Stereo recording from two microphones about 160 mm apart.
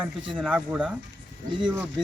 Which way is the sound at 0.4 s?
5° right (ahead or behind).